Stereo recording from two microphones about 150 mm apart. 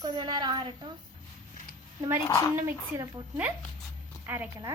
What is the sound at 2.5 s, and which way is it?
Speech, 15° right (ahead or behind).